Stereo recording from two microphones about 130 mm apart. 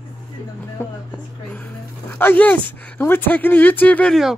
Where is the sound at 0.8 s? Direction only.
20° left (ahead or behind).